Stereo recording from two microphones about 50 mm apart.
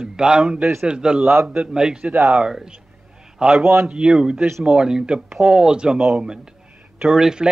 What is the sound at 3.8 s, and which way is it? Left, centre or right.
Speech, centre.